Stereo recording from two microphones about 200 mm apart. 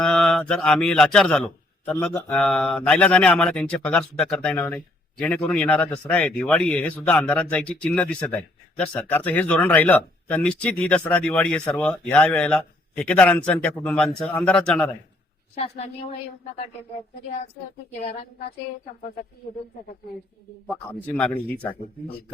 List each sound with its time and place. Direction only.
0.0 s mantra: 5° left (ahead or behind)
1.9 s speech: 5° left (ahead or behind)
15.5 s a woman's voice: 30° left (ahead or behind)
21.2 s speech: 5° left (ahead or behind)